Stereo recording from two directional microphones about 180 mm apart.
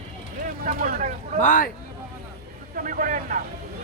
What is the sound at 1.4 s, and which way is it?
Speech, 45° left (ahead or behind).